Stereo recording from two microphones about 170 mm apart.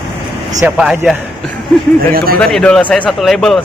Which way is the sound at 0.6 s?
5° right (ahead or behind).